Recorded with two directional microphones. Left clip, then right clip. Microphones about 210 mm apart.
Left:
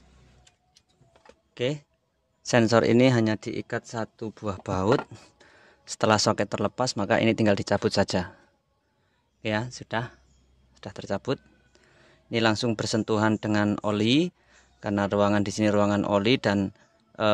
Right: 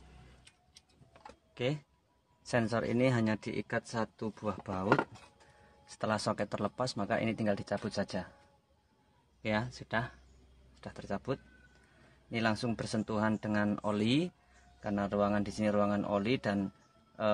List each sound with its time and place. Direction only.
1.5 s speech: 35° left (ahead or behind)
5.9 s speech: 50° left (ahead or behind)
9.4 s speech: 40° left (ahead or behind)